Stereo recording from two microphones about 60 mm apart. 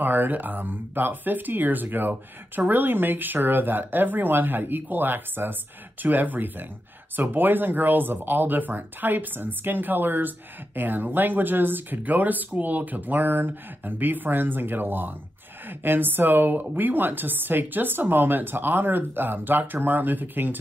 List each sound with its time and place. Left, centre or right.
0.0 s speech: right